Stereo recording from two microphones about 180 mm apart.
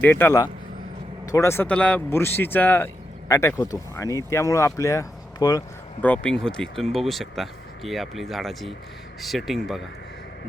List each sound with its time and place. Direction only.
0.0 s speech: 10° left (ahead or behind)
6.0 s speech: 10° left (ahead or behind)